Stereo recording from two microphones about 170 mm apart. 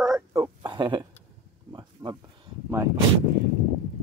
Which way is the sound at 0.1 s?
20° right (ahead or behind).